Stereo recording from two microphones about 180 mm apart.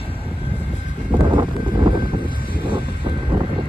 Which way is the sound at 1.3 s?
25° right (ahead or behind).